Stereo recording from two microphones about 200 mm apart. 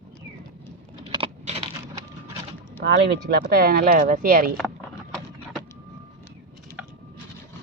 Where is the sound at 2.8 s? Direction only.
55° right (ahead or behind).